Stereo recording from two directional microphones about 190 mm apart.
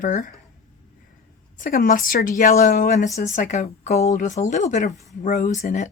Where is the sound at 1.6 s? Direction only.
45° left (ahead or behind).